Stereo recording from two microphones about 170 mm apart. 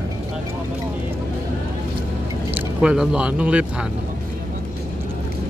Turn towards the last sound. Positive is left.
turn(degrees=-5)  # may be behind; listen again after turning